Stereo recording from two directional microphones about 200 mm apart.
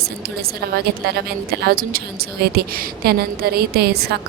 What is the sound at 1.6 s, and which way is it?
A woman's voice, 50° right (ahead or behind).